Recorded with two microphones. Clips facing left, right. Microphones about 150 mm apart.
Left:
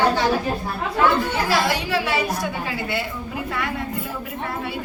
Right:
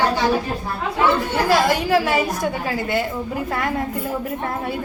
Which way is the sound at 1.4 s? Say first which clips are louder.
Right 4 dB; 45° right (ahead or behind).